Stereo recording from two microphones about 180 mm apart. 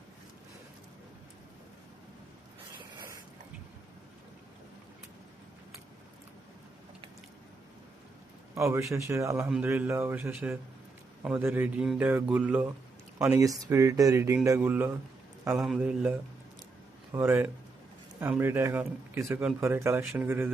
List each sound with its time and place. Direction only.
8.5 s speech: 15° right (ahead or behind)
13.3 s a man's voice: 20° right (ahead or behind)